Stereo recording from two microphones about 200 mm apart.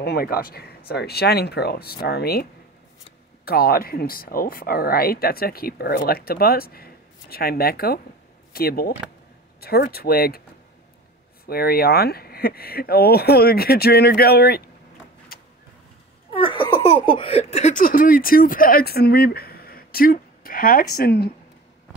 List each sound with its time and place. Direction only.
0.0 s speech: 50° left (ahead or behind)
3.4 s speech: 50° left (ahead or behind)
11.4 s speech: 50° left (ahead or behind)
15.3 s vehicle: 45° left (ahead or behind)
16.3 s speech: 25° left (ahead or behind); by 21.3 s 50° left (ahead or behind)